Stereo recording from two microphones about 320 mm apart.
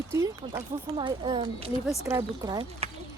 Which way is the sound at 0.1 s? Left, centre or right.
Centre.